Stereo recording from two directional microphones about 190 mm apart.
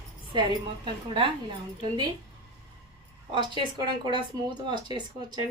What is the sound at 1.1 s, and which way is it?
Speech, 25° right (ahead or behind).